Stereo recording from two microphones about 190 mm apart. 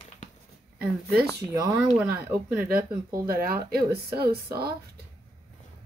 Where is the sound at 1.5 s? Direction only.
20° right (ahead or behind).